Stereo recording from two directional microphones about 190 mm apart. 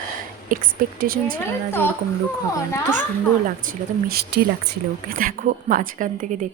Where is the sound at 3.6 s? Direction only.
55° right (ahead or behind).